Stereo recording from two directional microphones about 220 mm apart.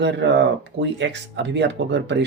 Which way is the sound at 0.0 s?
55° right (ahead or behind).